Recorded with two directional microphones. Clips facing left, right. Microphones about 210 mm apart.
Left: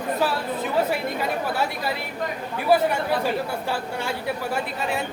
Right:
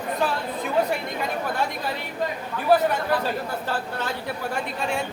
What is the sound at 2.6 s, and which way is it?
A woman's voice, 10° left (ahead or behind).